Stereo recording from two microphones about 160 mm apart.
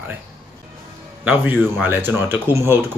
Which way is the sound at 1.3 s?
10° right (ahead or behind).